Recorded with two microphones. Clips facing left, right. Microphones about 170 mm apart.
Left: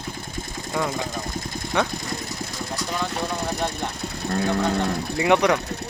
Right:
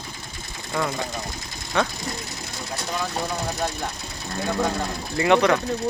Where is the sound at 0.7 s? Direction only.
15° left (ahead or behind).